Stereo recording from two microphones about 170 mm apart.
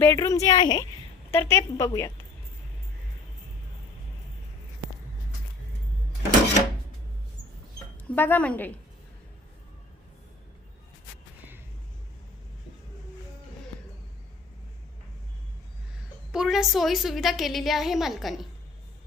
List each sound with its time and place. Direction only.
0.0 s a woman's voice: 15° left (ahead or behind)
1.3 s a woman's voice: 15° left (ahead or behind)
8.1 s a woman's voice: 10° left (ahead or behind)
16.3 s a woman's voice: 5° right (ahead or behind)